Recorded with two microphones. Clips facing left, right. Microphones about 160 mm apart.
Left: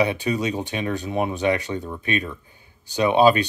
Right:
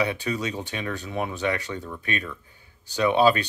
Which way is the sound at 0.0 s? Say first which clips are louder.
Left 4 dB; 20° left (ahead or behind).